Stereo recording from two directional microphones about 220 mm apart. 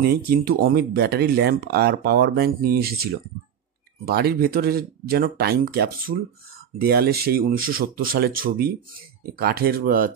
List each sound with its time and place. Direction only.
0.0 s speech: 45° right (ahead or behind)